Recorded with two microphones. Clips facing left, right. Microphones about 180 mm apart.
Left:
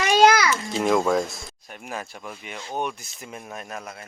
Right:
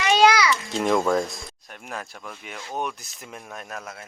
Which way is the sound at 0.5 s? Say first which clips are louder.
Left 1 dB; centre (ahead or behind).